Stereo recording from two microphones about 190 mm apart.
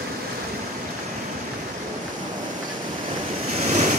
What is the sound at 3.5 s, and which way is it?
Waves, 40° right (ahead or behind).